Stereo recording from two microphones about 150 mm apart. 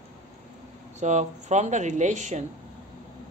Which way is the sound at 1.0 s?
50° right (ahead or behind).